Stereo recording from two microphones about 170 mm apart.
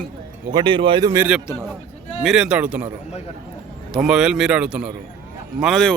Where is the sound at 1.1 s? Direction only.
15° right (ahead or behind).